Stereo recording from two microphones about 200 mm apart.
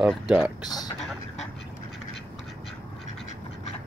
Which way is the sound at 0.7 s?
20° left (ahead or behind).